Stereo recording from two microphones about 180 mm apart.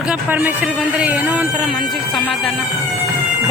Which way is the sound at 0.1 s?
10° right (ahead or behind).